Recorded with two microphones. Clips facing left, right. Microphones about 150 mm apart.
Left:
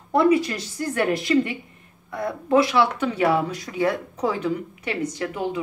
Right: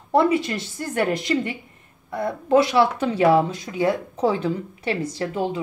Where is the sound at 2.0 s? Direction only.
25° right (ahead or behind).